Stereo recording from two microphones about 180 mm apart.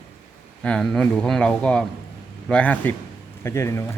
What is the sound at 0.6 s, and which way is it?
A man's voice, 5° left (ahead or behind).